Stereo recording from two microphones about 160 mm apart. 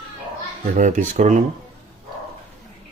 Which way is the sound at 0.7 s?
55° right (ahead or behind).